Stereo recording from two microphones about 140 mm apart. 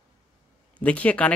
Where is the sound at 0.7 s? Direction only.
10° left (ahead or behind).